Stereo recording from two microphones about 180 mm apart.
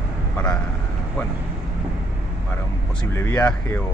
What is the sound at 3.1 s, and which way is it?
Speech, 15° left (ahead or behind).